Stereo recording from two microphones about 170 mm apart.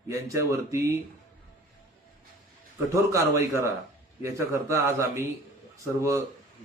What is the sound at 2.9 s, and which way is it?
Speech, 15° right (ahead or behind).